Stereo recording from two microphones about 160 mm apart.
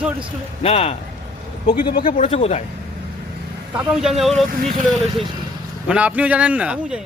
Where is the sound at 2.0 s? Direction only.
55° left (ahead or behind).